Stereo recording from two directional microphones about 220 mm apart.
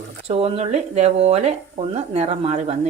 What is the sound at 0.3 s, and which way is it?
Speech, 25° right (ahead or behind).